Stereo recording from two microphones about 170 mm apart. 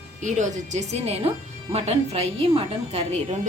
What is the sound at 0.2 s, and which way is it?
A woman's voice, 45° right (ahead or behind).